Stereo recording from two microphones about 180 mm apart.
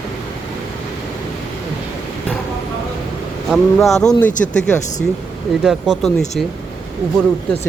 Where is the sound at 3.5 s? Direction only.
Centre (ahead or behind).